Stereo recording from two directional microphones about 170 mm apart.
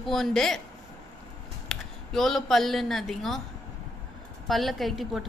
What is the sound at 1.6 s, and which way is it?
Speech, centre (ahead or behind).